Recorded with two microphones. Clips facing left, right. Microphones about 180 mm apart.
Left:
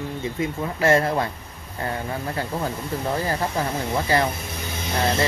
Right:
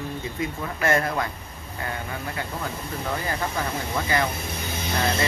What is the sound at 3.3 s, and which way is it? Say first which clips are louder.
Speech: left 3 dB; 35° left (ahead or behind).